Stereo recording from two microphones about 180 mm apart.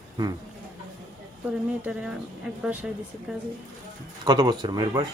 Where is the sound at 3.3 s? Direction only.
Centre (ahead or behind).